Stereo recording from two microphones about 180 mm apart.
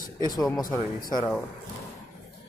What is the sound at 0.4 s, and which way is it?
Speech, 20° left (ahead or behind).